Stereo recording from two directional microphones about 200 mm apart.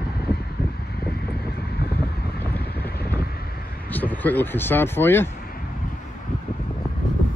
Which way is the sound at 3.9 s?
10° left (ahead or behind).